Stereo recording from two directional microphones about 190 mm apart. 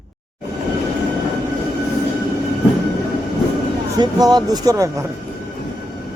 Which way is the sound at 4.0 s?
20° right (ahead or behind).